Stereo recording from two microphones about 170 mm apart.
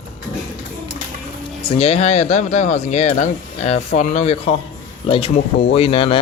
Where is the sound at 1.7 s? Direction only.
40° left (ahead or behind).